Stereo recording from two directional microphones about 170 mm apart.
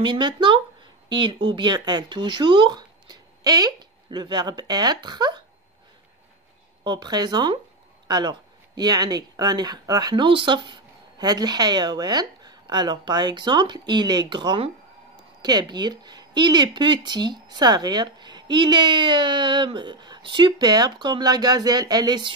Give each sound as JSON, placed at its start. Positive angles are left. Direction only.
{"t": 0.0, "sound": "speech", "side_deg": -25}
{"t": 6.8, "sound": "speech", "side_deg": -25}